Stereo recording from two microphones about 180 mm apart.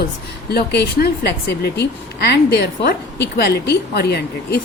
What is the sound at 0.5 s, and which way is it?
A woman's voice, 65° left (ahead or behind).